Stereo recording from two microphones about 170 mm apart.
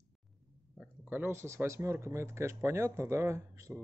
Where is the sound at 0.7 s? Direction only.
10° right (ahead or behind).